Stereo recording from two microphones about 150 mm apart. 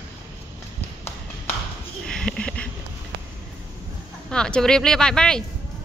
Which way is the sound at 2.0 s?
5° left (ahead or behind).